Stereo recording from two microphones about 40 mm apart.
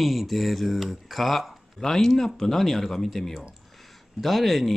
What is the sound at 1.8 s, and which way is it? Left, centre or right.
Speech, centre.